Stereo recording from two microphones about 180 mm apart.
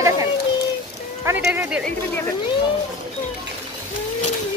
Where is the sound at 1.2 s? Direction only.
10° right (ahead or behind).